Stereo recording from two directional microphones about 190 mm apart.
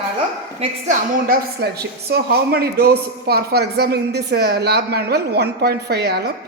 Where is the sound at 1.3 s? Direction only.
55° right (ahead or behind).